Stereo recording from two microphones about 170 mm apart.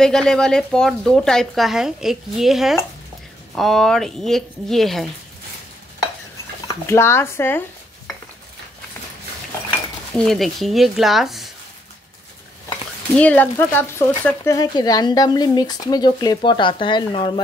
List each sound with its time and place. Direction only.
0.0 s speech: 5° left (ahead or behind)
6.9 s speech: 15° left (ahead or behind)
10.1 s speech: centre (ahead or behind)
13.2 s speech: 10° left (ahead or behind); by 17.4 s 30° left (ahead or behind)